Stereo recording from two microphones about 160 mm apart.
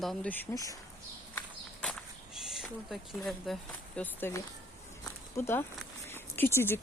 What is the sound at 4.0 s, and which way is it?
Speech, 15° left (ahead or behind).